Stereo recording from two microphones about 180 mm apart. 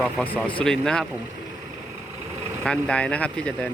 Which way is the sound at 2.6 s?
5° left (ahead or behind).